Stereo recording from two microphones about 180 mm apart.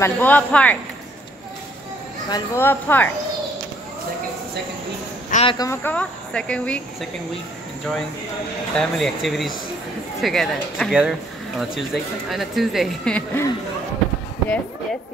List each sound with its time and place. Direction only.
0.0 s speech: 10° left (ahead or behind)
2.2 s speech: 15° left (ahead or behind)
5.3 s a sound: 35° left (ahead or behind)
5.6 s speech: 15° left (ahead or behind)
8.7 s speech: centre (ahead or behind)